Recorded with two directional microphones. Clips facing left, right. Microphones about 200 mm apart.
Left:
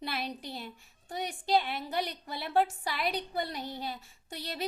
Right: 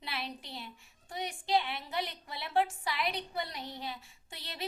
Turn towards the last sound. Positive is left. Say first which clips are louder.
# left 5 dB
turn(degrees=40)  # may be behind; listen again after turning